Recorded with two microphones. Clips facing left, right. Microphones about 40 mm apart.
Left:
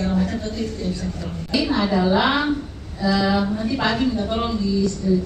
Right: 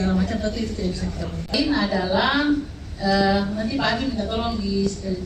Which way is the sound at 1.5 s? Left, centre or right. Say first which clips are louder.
Left 1 dB; centre.